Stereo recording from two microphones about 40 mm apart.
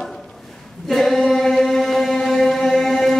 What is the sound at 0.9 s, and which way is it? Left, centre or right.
Choir, centre.